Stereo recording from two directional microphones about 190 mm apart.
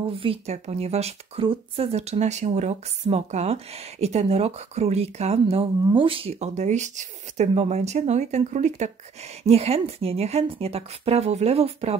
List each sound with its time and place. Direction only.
0.1 s speech: 30° right (ahead or behind)